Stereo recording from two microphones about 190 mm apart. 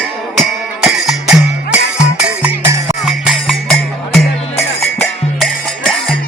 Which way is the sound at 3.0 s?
Centre (ahead or behind).